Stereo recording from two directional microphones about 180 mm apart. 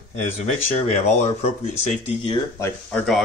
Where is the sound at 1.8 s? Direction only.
40° left (ahead or behind).